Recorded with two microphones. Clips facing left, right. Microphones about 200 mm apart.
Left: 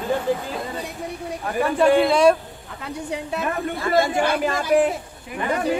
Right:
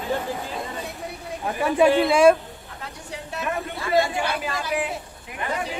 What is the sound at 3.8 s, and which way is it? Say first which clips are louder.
Speech: left 2 dB; 50° left (ahead or behind).